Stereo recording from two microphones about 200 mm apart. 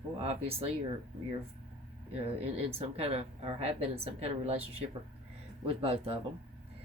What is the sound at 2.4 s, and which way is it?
Speech, 30° right (ahead or behind).